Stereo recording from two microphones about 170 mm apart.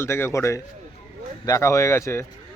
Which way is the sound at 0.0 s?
15° left (ahead or behind).